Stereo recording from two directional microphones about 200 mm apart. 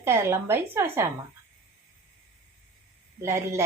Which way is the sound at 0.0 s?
15° right (ahead or behind).